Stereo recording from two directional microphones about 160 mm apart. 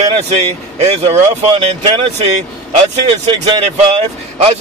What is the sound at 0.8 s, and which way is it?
Speech, 45° right (ahead or behind).